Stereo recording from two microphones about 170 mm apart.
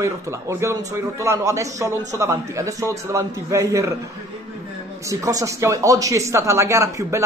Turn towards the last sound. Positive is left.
turn(degrees=-15)  # may be behind; listen again after turning